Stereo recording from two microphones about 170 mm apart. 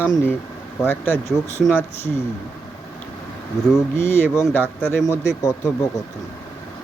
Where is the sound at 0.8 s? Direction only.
10° left (ahead or behind).